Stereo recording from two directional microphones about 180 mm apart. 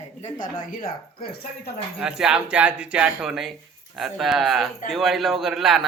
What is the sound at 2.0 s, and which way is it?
Speech, 5° right (ahead or behind).